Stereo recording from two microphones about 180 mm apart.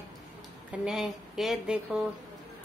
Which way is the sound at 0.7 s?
Centre (ahead or behind).